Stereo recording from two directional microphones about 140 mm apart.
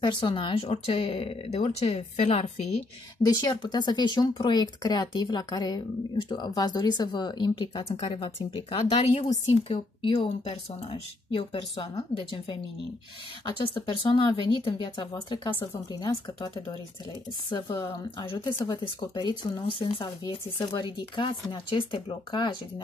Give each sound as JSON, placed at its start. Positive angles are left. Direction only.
{"t": 0.0, "sound": "speech", "side_deg": 35}
{"t": 3.2, "sound": "speech", "side_deg": 25}
{"t": 13.6, "sound": "speech", "side_deg": 35}
{"t": 17.5, "sound": "a woman's voice", "side_deg": 30}